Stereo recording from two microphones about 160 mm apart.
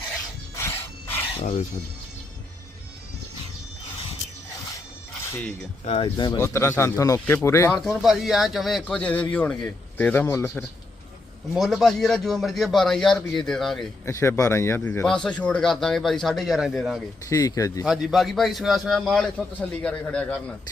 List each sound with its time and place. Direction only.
0.5 s a sound: 15° left (ahead or behind)
1.4 s speech: 45° left (ahead or behind)
5.3 s speech: 10° left (ahead or behind)
5.8 s speech: 35° left (ahead or behind)
6.3 s speech: 15° left (ahead or behind)
8.0 s a man's voice: centre (ahead or behind); by 10.5 s 15° left (ahead or behind)
11.5 s a man's voice: centre (ahead or behind)
14.0 s a man's voice: 15° left (ahead or behind); by 17.0 s centre (ahead or behind)
17.2 s speech: 20° left (ahead or behind)
17.8 s a man's voice: 5° right (ahead or behind)